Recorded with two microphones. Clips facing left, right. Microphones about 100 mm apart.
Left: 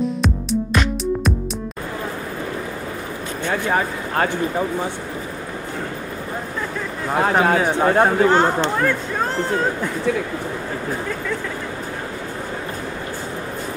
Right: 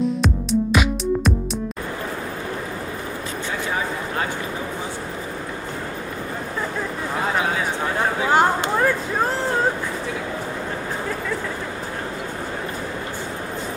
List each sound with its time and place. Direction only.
0.2 s music: centre (ahead or behind)
3.4 s speech: 60° left (ahead or behind)
7.3 s speech: 50° left (ahead or behind)
8.3 s speech: 10° right (ahead or behind)